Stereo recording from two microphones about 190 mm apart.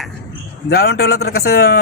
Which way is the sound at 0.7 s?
55° left (ahead or behind).